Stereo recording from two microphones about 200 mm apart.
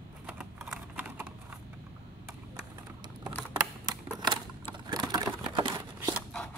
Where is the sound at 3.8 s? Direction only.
20° right (ahead or behind).